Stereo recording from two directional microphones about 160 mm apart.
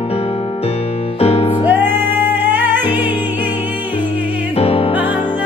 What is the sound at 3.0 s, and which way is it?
Music, 30° left (ahead or behind).